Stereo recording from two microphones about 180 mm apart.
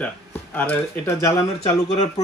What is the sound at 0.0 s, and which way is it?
Speech, 10° left (ahead or behind).